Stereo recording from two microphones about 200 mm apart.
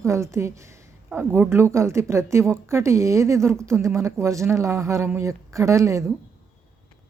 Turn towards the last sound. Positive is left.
turn(degrees=-15)  # may be behind; listen again after turning